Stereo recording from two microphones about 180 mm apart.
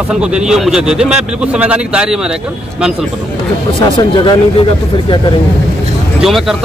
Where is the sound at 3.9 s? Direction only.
25° left (ahead or behind).